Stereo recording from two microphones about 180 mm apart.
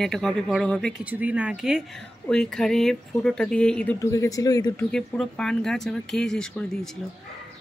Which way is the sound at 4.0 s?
15° left (ahead or behind).